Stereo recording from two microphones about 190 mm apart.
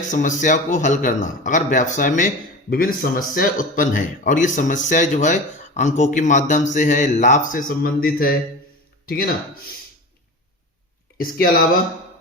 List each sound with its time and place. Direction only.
0.1 s speech: 40° left (ahead or behind)
11.2 s speech: 50° left (ahead or behind)